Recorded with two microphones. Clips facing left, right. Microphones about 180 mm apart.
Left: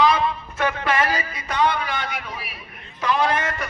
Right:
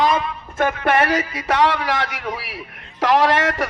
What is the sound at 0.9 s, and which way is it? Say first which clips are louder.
A man's voice: right 5 dB; 65° right (ahead or behind).